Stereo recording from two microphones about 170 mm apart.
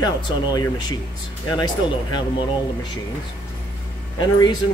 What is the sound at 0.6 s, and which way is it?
Speech, 25° left (ahead or behind).